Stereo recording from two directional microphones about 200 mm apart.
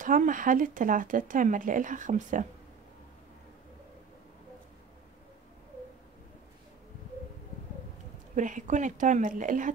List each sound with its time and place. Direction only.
0.0 s speech: 40° right (ahead or behind)
8.4 s speech: 40° right (ahead or behind)